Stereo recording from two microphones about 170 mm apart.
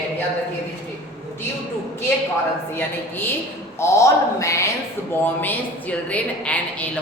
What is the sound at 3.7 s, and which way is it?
A woman's voice, 15° left (ahead or behind).